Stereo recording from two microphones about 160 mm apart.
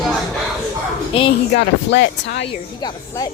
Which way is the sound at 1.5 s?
90° left.